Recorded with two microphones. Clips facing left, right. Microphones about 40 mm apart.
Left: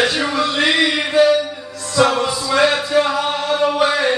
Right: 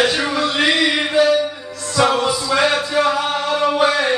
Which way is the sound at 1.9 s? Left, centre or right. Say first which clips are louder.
Left 1 dB; centre.